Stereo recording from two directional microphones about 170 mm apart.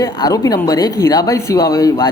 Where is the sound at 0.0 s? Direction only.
20° left (ahead or behind).